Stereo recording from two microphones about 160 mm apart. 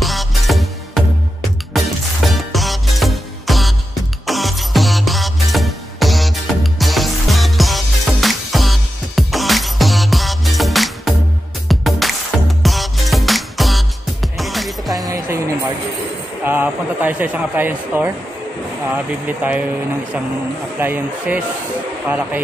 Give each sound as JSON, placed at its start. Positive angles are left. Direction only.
{"t": 0.0, "sound": "music", "side_deg": 0}
{"t": 15.0, "sound": "music", "side_deg": -20}
{"t": 16.4, "sound": "a sound", "side_deg": -10}
{"t": 19.2, "sound": "speech", "side_deg": -10}
{"t": 20.8, "sound": "speech", "side_deg": -10}